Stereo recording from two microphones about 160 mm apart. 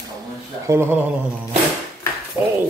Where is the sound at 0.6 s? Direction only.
15° right (ahead or behind).